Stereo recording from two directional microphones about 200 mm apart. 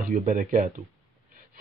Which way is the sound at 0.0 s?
40° right (ahead or behind).